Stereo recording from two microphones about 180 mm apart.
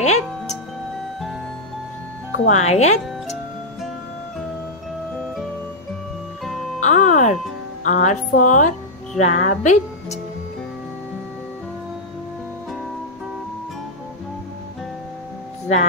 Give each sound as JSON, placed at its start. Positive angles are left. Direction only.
{"t": 0.0, "sound": "music", "side_deg": 40}
{"t": 2.4, "sound": "speech", "side_deg": 40}
{"t": 6.8, "sound": "music", "side_deg": 45}
{"t": 7.8, "sound": "speech", "side_deg": 40}